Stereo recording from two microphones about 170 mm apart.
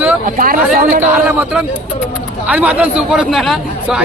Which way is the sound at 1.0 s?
10° right (ahead or behind).